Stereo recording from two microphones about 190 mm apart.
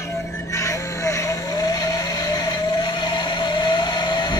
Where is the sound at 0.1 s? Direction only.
15° left (ahead or behind).